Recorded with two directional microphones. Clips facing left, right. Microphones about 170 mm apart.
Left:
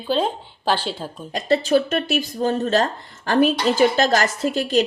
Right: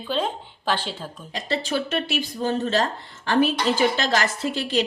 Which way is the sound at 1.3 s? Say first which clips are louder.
Left 8 dB; 45° left (ahead or behind).